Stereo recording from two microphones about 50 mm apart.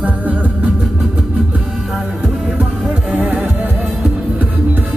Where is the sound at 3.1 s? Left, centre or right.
Right.